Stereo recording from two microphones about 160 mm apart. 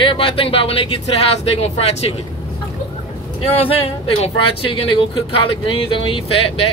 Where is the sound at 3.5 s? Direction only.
35° left (ahead or behind).